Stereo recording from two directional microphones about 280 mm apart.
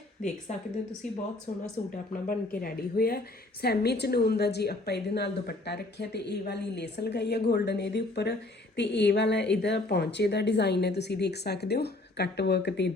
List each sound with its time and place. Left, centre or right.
0.5 s a woman's voice: left